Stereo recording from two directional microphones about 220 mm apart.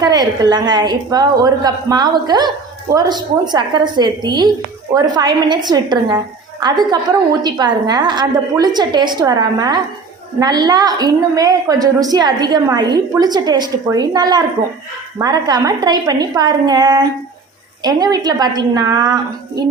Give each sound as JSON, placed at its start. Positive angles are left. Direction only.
{"t": 0.0, "sound": "a woman's voice", "side_deg": -20}